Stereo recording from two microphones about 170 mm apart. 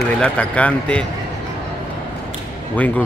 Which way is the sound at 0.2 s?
5° left (ahead or behind).